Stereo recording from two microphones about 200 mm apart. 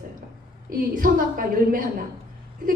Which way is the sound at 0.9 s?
45° right (ahead or behind).